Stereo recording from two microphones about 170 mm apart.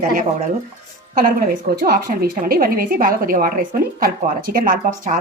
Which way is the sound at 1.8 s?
60° right (ahead or behind).